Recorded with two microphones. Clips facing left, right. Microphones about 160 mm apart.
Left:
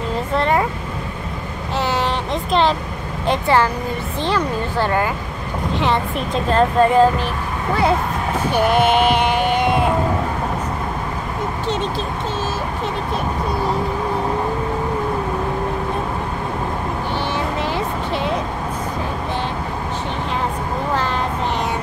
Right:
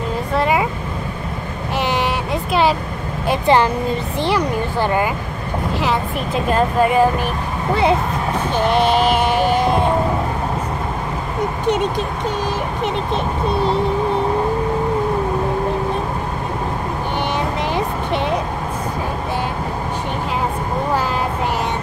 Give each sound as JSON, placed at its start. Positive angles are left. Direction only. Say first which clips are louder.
{"t": 0.4, "sound": "vehicle", "louder": "right 1 dB", "side_deg": -5}
{"t": 1.8, "sound": "vehicle", "louder": "right 1 dB", "side_deg": -15}
{"t": 3.4, "sound": "speech", "louder": "right 4 dB", "side_deg": -20}
{"t": 5.8, "sound": "speech", "louder": "left 2 dB", "side_deg": -5}
{"t": 8.5, "sound": "a sound", "louder": "left 1 dB", "side_deg": 5}
{"t": 9.2, "sound": "music", "louder": "right 1 dB", "side_deg": -40}
{"t": 11.6, "sound": "speech", "louder": "right 5 dB", "side_deg": -15}